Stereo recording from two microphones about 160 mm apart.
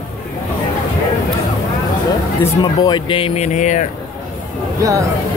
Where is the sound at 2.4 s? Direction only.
25° left (ahead or behind).